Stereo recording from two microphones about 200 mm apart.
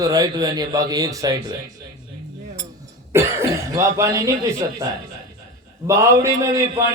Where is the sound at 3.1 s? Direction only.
15° right (ahead or behind).